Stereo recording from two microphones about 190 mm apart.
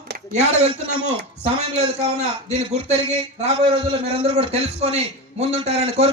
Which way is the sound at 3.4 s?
30° right (ahead or behind).